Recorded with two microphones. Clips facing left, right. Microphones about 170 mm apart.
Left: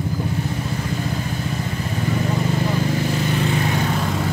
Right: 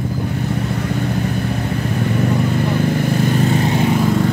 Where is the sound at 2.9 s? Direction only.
55° right (ahead or behind).